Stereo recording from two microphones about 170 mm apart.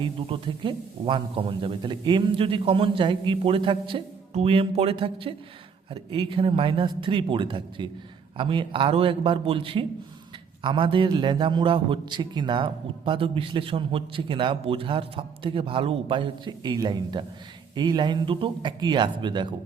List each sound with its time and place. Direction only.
0.0 s a man's voice: 30° right (ahead or behind)